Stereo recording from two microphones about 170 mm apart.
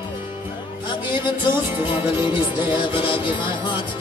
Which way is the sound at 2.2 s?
30° left (ahead or behind).